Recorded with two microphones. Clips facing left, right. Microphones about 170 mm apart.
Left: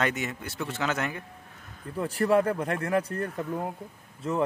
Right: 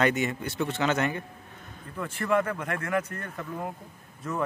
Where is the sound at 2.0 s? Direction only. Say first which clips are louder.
Left 3 dB; 35° left (ahead or behind).